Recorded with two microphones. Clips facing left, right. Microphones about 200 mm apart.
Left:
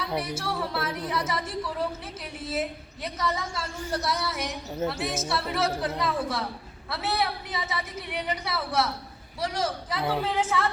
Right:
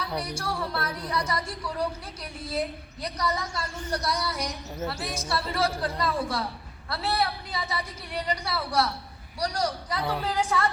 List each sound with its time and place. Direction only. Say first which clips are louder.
0.2 s a woman's voice: left 1 dB; 5° left (ahead or behind)